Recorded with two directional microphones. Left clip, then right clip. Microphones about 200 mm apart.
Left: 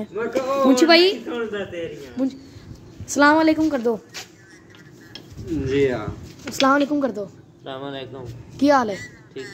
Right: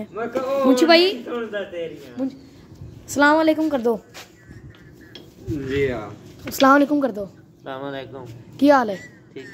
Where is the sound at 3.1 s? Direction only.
5° right (ahead or behind).